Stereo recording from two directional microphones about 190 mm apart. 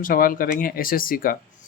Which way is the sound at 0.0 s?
45° left (ahead or behind).